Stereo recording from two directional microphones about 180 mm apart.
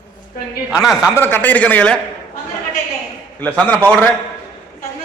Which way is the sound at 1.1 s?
10° left (ahead or behind).